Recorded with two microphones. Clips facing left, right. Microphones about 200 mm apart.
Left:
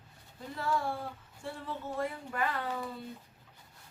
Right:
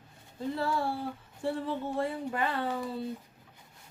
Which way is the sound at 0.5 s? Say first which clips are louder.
Right 1 dB; 30° right (ahead or behind).